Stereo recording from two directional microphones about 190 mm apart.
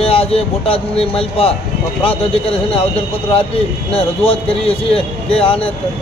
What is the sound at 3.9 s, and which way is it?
Speech, 30° left (ahead or behind).